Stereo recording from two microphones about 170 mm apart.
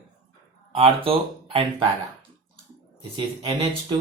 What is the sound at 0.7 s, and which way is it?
Speech, 35° right (ahead or behind).